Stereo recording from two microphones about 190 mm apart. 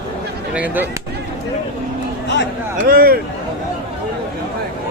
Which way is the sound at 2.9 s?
50° right (ahead or behind).